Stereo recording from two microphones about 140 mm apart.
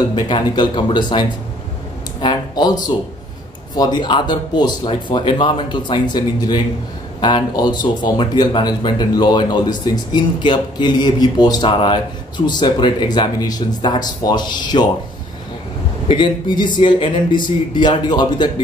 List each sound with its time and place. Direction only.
0.1 s speech: 35° left (ahead or behind)
2.2 s speech: 30° left (ahead or behind)
16.1 s speech: 35° left (ahead or behind)